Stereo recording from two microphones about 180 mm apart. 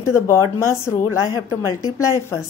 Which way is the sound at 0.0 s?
15° left (ahead or behind).